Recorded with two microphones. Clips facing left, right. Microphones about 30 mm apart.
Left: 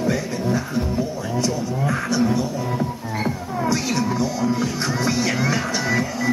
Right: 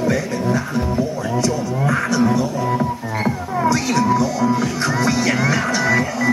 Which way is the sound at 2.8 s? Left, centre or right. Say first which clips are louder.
Right 4 dB; right.